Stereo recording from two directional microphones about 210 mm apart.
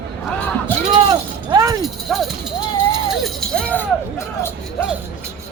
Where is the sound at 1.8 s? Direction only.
Centre (ahead or behind).